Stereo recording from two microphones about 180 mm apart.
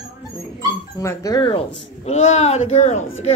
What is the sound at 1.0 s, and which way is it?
A woman's voice, 15° left (ahead or behind).